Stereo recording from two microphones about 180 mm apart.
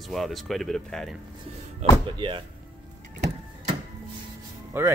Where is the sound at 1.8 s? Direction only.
35° right (ahead or behind).